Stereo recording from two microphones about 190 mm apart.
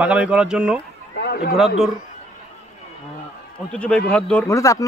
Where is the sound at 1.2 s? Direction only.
60° left (ahead or behind).